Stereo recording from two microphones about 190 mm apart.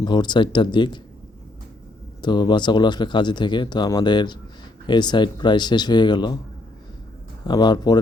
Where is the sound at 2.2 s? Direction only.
25° left (ahead or behind).